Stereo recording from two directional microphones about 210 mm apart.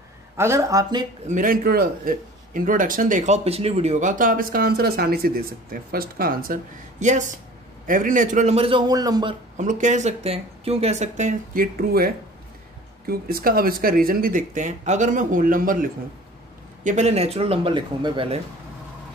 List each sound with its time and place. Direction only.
0.4 s speech: 15° right (ahead or behind)
1.2 s a man's voice: 40° right (ahead or behind); by 9.3 s 20° right (ahead or behind)
9.6 s a man's voice: 35° right (ahead or behind)